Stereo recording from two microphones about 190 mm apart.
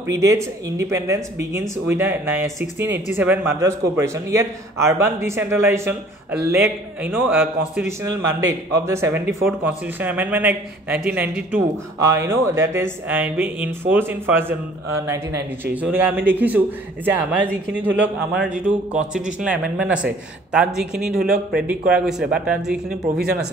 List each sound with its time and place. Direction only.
0.0 s a man's voice: 15° right (ahead or behind)